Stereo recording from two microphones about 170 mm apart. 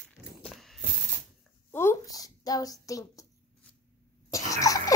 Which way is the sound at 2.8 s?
20° left (ahead or behind).